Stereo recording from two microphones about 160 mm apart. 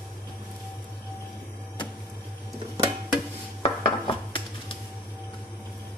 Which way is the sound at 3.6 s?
35° left (ahead or behind).